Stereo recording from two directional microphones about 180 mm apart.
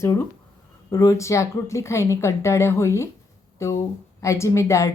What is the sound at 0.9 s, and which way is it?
A woman's voice, 20° left (ahead or behind).